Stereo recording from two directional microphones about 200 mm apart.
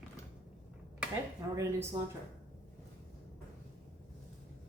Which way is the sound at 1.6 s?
15° right (ahead or behind).